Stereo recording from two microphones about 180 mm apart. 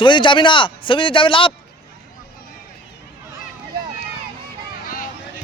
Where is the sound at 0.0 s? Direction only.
25° left (ahead or behind).